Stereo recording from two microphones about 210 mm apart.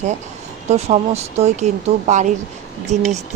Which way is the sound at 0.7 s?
30° right (ahead or behind).